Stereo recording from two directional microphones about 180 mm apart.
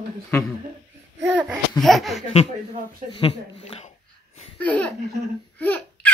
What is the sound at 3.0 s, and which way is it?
Speech, 30° left (ahead or behind).